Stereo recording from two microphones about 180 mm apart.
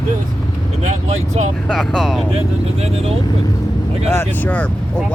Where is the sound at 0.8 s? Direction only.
40° right (ahead or behind).